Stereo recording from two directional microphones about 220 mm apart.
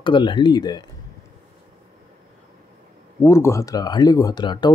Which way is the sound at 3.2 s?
10° left (ahead or behind).